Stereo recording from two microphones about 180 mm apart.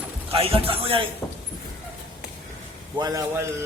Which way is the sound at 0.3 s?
30° right (ahead or behind).